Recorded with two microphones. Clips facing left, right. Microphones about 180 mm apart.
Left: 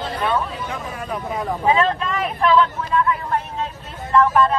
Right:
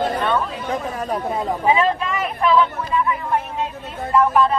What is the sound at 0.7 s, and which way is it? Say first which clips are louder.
Speech: right 5 dB; 40° right (ahead or behind).